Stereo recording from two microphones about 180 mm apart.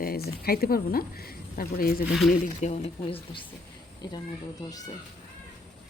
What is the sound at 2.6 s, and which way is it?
Speech, 35° left (ahead or behind).